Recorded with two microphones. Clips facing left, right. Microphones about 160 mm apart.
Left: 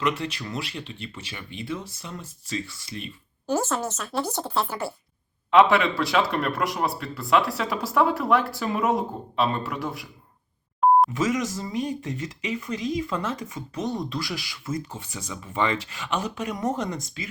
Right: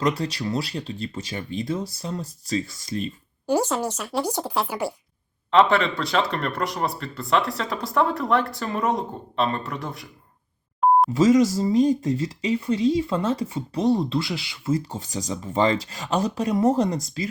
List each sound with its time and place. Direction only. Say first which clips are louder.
0.0 s speech: right 3 dB; 40° right (ahead or behind)
3.4 s speech: right 3 dB; 15° right (ahead or behind)
5.5 s speech: even; 5° left (ahead or behind)
11.1 s speech: right 8 dB; 35° right (ahead or behind)